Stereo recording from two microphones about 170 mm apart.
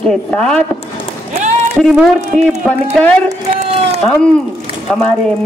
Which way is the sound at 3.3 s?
40° right (ahead or behind).